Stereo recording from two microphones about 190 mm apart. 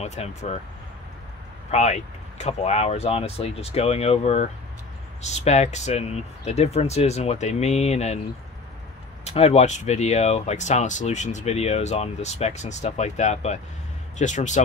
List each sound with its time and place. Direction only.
0.0 s speech: 35° left (ahead or behind)
1.7 s speech: 35° left (ahead or behind)
9.2 s speech: 35° left (ahead or behind)